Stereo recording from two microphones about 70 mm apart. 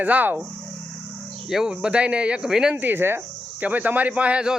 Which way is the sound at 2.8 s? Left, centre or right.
Right.